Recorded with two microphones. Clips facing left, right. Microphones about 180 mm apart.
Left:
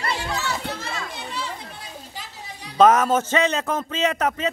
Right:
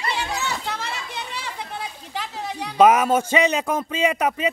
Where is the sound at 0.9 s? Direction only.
55° left (ahead or behind).